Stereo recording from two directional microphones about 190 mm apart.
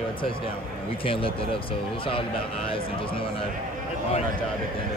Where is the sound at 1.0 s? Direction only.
30° left (ahead or behind).